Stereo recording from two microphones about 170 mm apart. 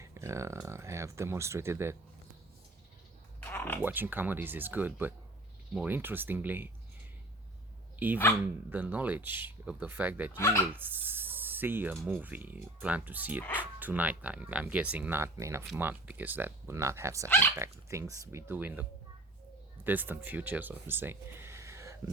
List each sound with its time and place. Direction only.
0.0 s speech: 15° right (ahead or behind)
3.4 s a sound: 10° left (ahead or behind)
3.8 s speech: 10° right (ahead or behind)
7.9 s speech: 10° right (ahead or behind)
10.3 s speech: 15° left (ahead or behind)
10.7 s speech: 10° right (ahead or behind)
13.4 s speech: 10° left (ahead or behind)
13.7 s speech: 10° right (ahead or behind)
17.2 s speech: 10° left (ahead or behind)
17.6 s speech: 15° right (ahead or behind)